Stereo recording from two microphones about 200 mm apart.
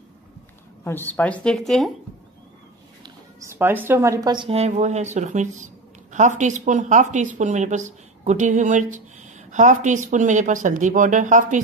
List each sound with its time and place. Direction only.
0.8 s speech: 10° left (ahead or behind)
3.0 s speech: 15° right (ahead or behind); by 11.6 s 40° right (ahead or behind)